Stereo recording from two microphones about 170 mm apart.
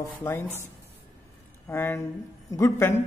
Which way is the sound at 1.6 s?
15° left (ahead or behind).